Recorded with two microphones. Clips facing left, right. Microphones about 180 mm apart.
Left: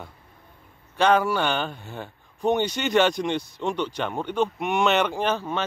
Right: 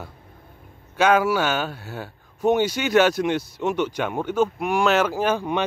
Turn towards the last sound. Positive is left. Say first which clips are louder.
# right 3 dB
turn(degrees=-15)  # may be behind; listen again after turning